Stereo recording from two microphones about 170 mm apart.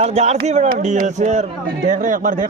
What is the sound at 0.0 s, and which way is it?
A man's voice, 40° right (ahead or behind).